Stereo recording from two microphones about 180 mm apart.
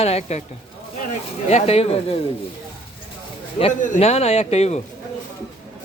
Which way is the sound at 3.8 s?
35° left (ahead or behind).